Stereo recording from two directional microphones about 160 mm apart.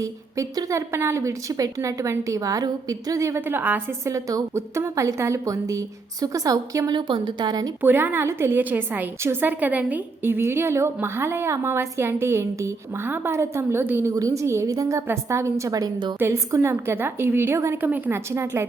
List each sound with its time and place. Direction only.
0.0 s a woman's voice: 20° right (ahead or behind)
7.8 s a woman's voice: 10° right (ahead or behind)